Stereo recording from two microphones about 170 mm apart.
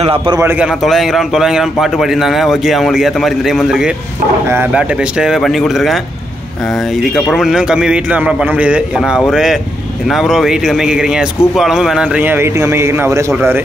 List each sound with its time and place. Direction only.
0.0 s a man's voice: 30° right (ahead or behind)
0.4 s a man's voice: 10° right (ahead or behind)
0.7 s speech: centre (ahead or behind)